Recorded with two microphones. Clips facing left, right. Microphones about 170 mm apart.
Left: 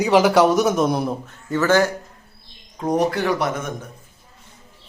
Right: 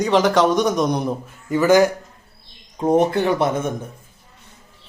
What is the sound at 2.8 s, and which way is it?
Speech, 25° right (ahead or behind).